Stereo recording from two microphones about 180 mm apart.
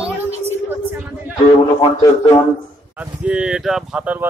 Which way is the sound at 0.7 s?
10° right (ahead or behind).